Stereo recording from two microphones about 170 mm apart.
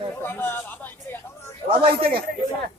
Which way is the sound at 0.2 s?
10° left (ahead or behind).